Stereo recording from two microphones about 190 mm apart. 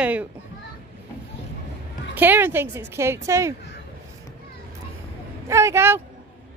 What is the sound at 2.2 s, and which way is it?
A woman's voice, 10° right (ahead or behind).